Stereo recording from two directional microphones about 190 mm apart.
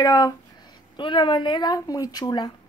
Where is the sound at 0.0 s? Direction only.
20° left (ahead or behind).